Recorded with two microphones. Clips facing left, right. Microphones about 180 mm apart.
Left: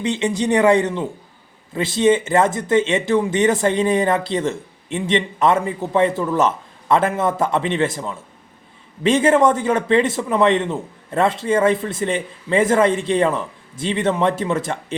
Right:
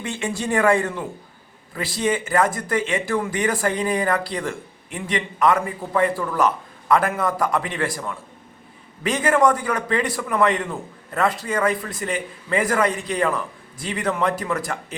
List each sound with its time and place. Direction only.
0.0 s speech: 20° left (ahead or behind)